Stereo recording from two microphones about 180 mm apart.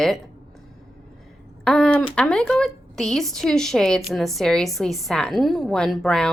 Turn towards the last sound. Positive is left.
turn(degrees=0)  # may be behind; listen again after turning